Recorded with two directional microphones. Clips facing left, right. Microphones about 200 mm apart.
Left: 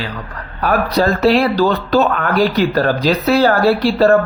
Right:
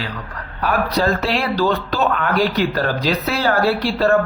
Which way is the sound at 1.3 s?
40° left (ahead or behind).